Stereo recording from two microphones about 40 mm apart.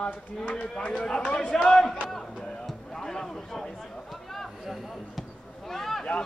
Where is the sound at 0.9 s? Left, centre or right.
Left.